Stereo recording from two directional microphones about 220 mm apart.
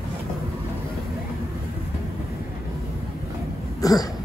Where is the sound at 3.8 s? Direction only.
15° left (ahead or behind).